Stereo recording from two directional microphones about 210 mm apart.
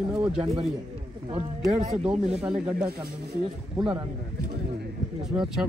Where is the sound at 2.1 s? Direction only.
35° right (ahead or behind).